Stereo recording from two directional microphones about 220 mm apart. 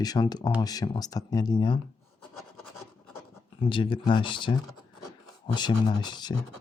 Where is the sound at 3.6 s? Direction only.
25° left (ahead or behind).